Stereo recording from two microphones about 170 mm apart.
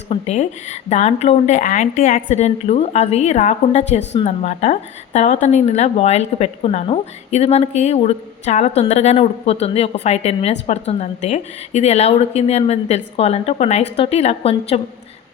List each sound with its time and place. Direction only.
0.1 s a woman's voice: 40° left (ahead or behind)
2.3 s a woman's voice: 40° left (ahead or behind)